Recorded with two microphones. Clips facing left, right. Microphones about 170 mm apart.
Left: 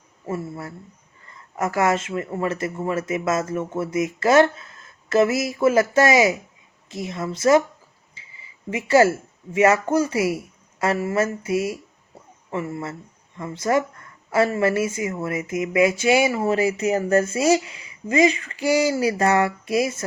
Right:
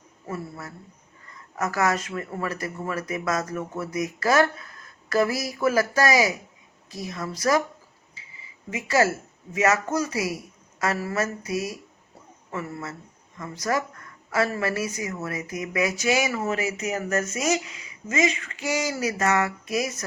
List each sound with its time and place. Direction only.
0.3 s speech: 25° left (ahead or behind)
8.7 s speech: 30° left (ahead or behind)